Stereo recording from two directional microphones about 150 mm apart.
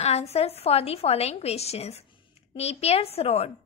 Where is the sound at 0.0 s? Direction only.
45° left (ahead or behind).